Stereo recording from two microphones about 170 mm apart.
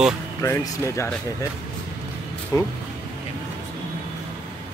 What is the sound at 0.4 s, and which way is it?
Speech, 15° left (ahead or behind).